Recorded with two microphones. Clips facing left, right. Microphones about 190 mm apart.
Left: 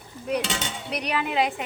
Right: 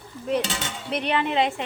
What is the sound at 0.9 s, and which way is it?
Speech, centre (ahead or behind).